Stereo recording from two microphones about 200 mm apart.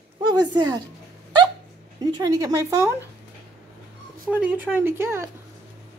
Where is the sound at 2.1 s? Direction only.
20° right (ahead or behind).